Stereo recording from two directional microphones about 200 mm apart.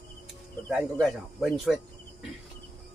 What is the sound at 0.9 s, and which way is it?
Speech, centre (ahead or behind).